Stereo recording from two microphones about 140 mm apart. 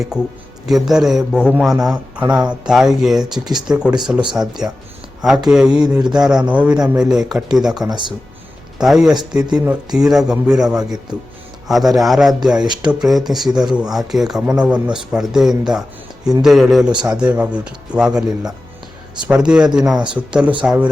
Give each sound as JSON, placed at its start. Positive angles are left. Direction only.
{"t": 0.7, "sound": "speech", "side_deg": 0}
{"t": 7.9, "sound": "speech", "side_deg": -35}
{"t": 8.8, "sound": "speech", "side_deg": -5}
{"t": 12.6, "sound": "speech", "side_deg": -30}
{"t": 12.9, "sound": "speech", "side_deg": 0}